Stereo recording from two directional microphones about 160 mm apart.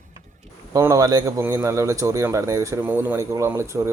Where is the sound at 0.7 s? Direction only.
20° right (ahead or behind).